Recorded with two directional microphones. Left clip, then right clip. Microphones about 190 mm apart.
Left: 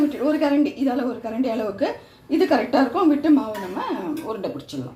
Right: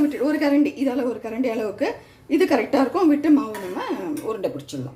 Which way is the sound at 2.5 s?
25° right (ahead or behind).